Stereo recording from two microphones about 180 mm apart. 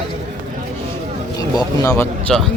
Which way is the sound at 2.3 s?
Centre (ahead or behind).